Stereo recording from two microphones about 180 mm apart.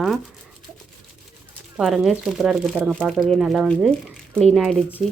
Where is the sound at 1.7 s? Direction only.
Centre (ahead or behind).